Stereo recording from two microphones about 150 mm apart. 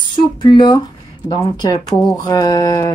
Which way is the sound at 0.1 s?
30° left (ahead or behind).